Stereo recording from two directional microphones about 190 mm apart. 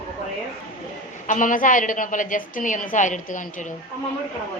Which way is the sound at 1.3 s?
45° left (ahead or behind).